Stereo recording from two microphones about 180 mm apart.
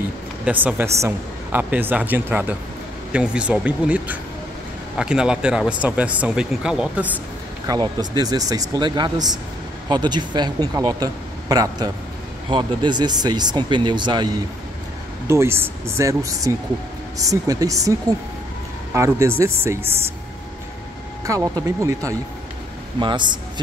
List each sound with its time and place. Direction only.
0.5 s a woman's voice: 10° right (ahead or behind)
7.6 s a woman's voice: 20° right (ahead or behind)
18.9 s a woman's voice: 15° right (ahead or behind)
21.3 s a woman's voice: 15° right (ahead or behind)